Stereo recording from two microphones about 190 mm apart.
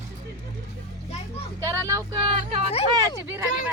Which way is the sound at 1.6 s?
15° right (ahead or behind).